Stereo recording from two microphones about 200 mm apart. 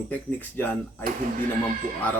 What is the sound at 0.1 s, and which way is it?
Speech, 10° left (ahead or behind).